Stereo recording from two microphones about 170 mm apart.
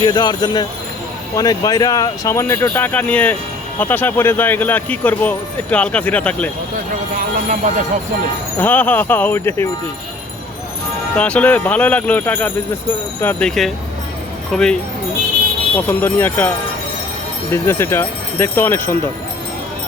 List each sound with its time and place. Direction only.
0.0 s speech: 25° left (ahead or behind); by 6.5 s 10° left (ahead or behind)
7.2 s speech: 45° right (ahead or behind)
8.5 s speech: 10° left (ahead or behind)
11.2 s speech: 5° left (ahead or behind)
15.9 s speech: 15° left (ahead or behind)
17.5 s speech: 15° left (ahead or behind)